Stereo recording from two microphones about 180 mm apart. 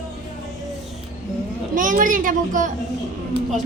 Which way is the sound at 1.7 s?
50° right (ahead or behind).